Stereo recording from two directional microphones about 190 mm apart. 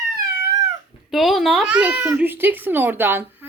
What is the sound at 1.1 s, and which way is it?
A child's voice, centre (ahead or behind).